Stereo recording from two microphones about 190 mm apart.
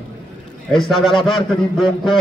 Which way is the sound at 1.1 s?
25° left (ahead or behind).